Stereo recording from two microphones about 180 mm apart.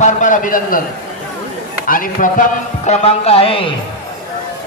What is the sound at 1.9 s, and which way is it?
Speech, 50° left (ahead or behind).